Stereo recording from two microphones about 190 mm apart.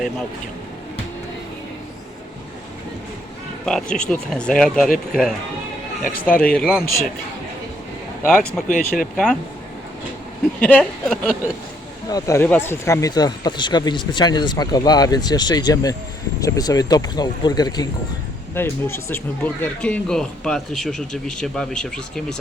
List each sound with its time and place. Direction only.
3.7 s speech: 5° left (ahead or behind)
8.6 s speech: 45° left (ahead or behind)
9.1 s speech: 5° left (ahead or behind)
10.6 s speech: 5° left (ahead or behind)
12.1 s speech: 15° left (ahead or behind)